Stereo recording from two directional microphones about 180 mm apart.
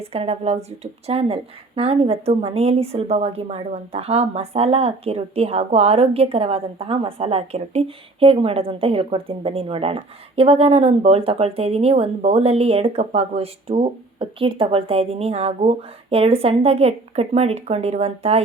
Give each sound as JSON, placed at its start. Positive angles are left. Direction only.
{"t": 0.0, "sound": "a woman's voice", "side_deg": -35}